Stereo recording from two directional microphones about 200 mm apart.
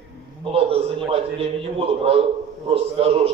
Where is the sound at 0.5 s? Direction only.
30° right (ahead or behind).